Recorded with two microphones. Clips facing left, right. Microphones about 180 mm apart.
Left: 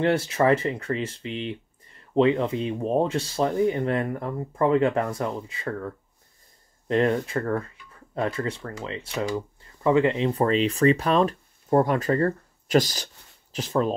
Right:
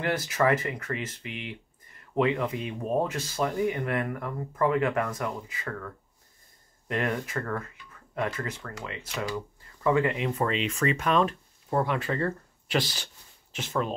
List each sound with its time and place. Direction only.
0.0 s speech: 30° left (ahead or behind)
6.9 s speech: 30° left (ahead or behind)